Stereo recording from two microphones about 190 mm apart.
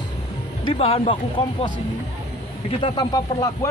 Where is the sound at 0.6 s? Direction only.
30° left (ahead or behind).